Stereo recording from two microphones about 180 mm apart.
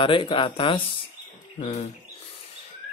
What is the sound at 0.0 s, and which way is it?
Speech, 30° left (ahead or behind).